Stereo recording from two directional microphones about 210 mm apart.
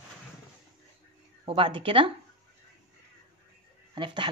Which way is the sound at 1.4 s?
25° right (ahead or behind).